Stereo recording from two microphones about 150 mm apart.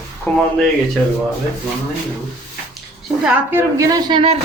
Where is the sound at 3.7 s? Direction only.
30° right (ahead or behind).